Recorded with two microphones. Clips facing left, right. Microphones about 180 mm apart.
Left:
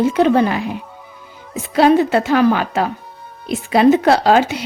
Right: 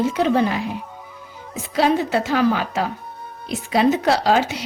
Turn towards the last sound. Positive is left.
turn(degrees=60)  # may be behind; listen again after turning